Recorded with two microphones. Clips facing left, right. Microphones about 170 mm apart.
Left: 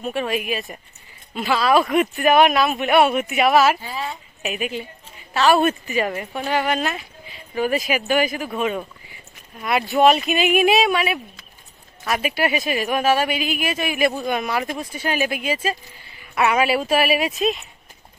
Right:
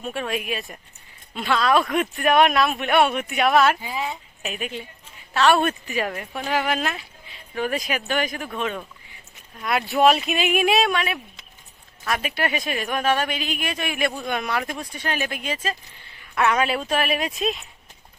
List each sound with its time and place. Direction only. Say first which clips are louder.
0.0 s speech: left 4 dB; centre (ahead or behind)
3.8 s speech: even; 15° right (ahead or behind)
4.4 s speech: left 5 dB; 5° left (ahead or behind)